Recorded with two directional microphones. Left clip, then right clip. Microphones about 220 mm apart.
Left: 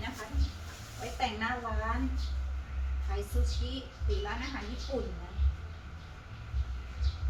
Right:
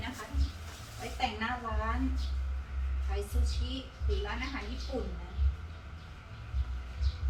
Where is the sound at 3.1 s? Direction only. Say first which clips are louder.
Even; 20° right (ahead or behind).